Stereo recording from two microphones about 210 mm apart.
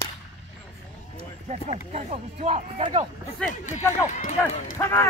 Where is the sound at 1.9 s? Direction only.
30° right (ahead or behind).